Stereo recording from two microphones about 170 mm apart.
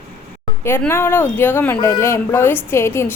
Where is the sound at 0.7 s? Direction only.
15° left (ahead or behind).